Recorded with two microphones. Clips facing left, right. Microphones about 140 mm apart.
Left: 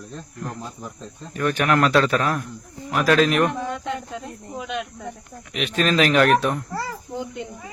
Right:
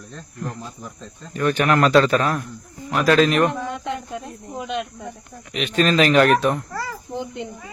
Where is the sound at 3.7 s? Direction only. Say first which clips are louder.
Right 1 dB; 20° right (ahead or behind).